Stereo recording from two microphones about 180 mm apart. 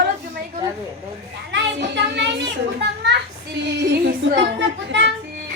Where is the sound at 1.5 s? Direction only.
80° right.